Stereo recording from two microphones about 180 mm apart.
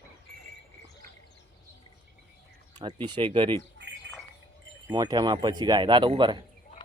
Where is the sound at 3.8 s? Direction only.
70° right (ahead or behind).